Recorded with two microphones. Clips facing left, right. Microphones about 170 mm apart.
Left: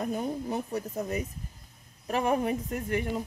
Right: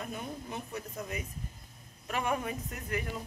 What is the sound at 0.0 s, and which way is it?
Speech, 40° left (ahead or behind).